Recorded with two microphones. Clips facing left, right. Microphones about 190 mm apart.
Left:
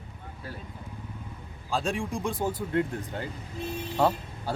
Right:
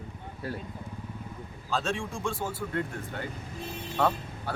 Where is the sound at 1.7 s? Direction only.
15° left (ahead or behind).